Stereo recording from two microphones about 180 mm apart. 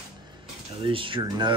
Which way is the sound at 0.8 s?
30° right (ahead or behind).